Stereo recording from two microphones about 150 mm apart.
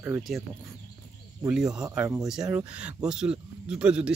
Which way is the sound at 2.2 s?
5° right (ahead or behind).